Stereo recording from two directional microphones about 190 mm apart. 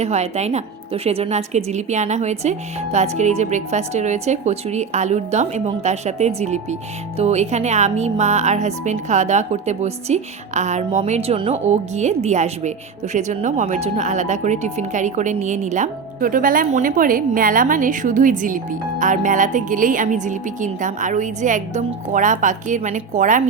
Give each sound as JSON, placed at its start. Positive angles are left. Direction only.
{"t": 0.0, "sound": "speech", "side_deg": -35}